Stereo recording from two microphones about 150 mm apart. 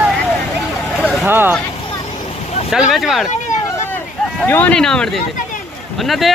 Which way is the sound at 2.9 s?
Centre (ahead or behind).